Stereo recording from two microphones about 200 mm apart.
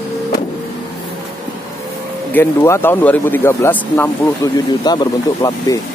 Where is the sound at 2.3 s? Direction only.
10° left (ahead or behind).